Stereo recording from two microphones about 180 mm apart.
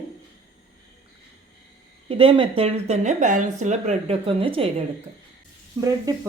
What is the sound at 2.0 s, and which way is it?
A woman's voice, 30° right (ahead or behind).